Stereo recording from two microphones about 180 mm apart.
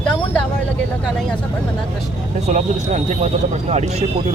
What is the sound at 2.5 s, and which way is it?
Speech, 40° right (ahead or behind).